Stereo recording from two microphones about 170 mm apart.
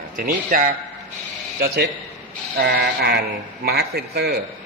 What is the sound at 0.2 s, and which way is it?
Speech, 55° right (ahead or behind).